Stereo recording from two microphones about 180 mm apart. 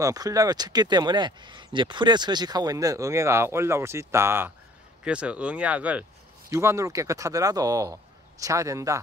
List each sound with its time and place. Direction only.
0.0 s speech: 20° right (ahead or behind)